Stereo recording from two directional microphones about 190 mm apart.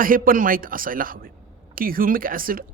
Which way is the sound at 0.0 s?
45° right (ahead or behind).